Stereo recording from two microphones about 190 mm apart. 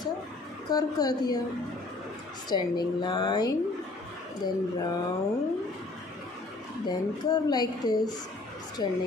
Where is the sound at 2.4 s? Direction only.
20° left (ahead or behind).